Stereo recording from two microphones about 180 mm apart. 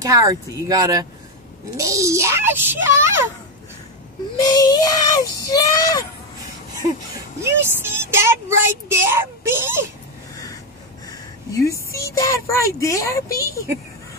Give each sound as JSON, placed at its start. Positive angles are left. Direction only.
{"t": 0.0, "sound": "speech", "side_deg": -20}
{"t": 4.4, "sound": "speech", "side_deg": 20}
{"t": 7.4, "sound": "speech", "side_deg": -15}
{"t": 11.6, "sound": "speech", "side_deg": 15}